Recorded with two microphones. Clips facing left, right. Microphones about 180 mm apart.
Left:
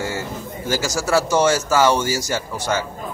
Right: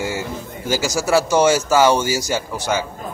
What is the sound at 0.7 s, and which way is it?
Speech, 15° right (ahead or behind).